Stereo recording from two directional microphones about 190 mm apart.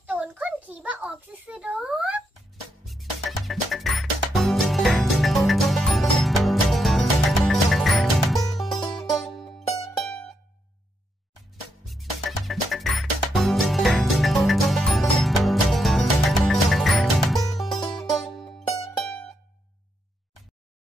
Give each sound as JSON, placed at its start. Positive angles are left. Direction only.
{"t": 0.0, "sound": "a sound", "side_deg": -5}
{"t": 2.8, "sound": "music", "side_deg": 0}
{"t": 8.9, "sound": "music", "side_deg": 20}
{"t": 9.2, "sound": "music", "side_deg": 0}
{"t": 11.8, "sound": "music", "side_deg": 0}
{"t": 17.7, "sound": "music", "side_deg": 20}
{"t": 18.1, "sound": "music", "side_deg": 0}